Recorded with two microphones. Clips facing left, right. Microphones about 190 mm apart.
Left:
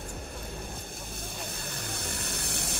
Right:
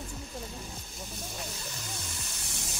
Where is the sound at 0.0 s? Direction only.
60° left (ahead or behind).